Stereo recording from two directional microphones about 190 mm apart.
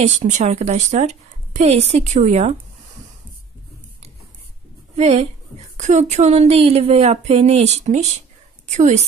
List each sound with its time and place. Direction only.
0.0 s a woman's voice: 40° right (ahead or behind)
4.9 s a woman's voice: 35° right (ahead or behind)